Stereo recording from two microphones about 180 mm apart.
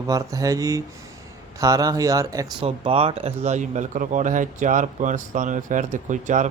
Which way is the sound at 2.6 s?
30° right (ahead or behind).